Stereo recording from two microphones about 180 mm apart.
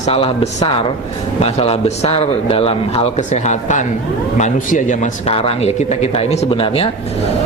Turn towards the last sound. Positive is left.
turn(degrees=30)  # may be behind; listen again after turning